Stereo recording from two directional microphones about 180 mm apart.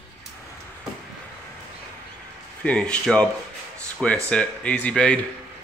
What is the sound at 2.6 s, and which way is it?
Speech, 5° left (ahead or behind).